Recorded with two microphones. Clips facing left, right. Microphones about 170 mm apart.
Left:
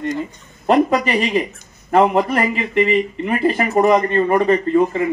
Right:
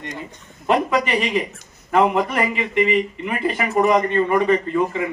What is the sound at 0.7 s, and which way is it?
A man's voice, 40° left (ahead or behind).